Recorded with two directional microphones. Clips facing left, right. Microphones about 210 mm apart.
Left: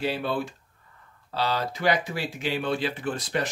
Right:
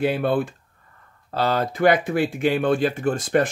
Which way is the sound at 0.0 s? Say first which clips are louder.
Right 7 dB; 55° right (ahead or behind).